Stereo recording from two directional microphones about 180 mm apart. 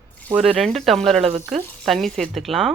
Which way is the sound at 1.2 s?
35° right (ahead or behind).